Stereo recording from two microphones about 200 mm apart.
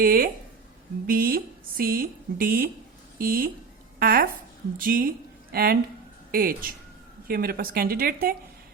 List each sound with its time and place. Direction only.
0.0 s speech: 45° right (ahead or behind)